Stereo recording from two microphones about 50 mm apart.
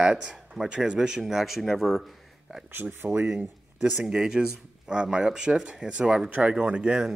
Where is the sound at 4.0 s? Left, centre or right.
Centre.